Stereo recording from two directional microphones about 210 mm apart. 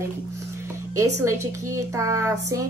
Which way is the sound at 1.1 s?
15° right (ahead or behind).